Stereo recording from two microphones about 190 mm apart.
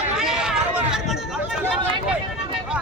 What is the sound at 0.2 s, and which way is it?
Chatter, 5° right (ahead or behind).